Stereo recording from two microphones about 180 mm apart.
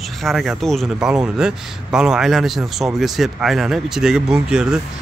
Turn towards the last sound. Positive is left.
turn(degrees=-5)  # may be behind; listen again after turning